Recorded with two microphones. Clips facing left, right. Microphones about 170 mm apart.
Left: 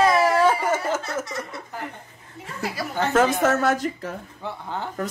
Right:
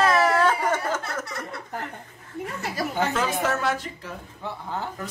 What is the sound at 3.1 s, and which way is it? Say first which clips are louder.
A woman's voice: left 6 dB; 45° left (ahead or behind).